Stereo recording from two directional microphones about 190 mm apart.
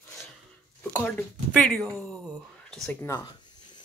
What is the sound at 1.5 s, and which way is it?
Speech, 5° left (ahead or behind).